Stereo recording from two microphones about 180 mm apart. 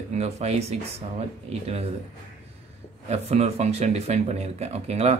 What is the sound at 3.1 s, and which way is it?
Speech, 35° right (ahead or behind).